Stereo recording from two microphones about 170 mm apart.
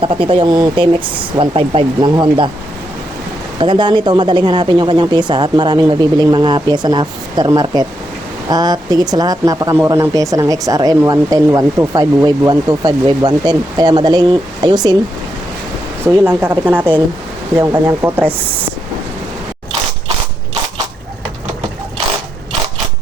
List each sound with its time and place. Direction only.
0.0 s speech: 30° right (ahead or behind)
3.6 s speech: 25° right (ahead or behind)
16.0 s speech: 10° right (ahead or behind)